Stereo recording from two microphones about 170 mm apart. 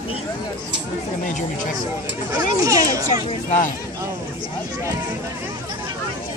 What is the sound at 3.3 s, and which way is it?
Speech, 45° left (ahead or behind).